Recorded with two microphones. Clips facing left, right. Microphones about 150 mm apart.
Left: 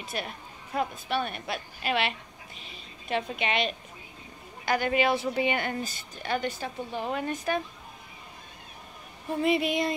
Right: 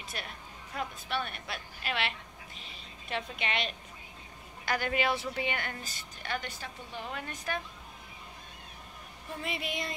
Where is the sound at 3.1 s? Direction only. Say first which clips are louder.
Left 6 dB; 10° left (ahead or behind).